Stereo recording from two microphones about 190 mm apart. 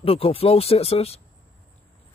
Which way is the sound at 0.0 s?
30° left (ahead or behind).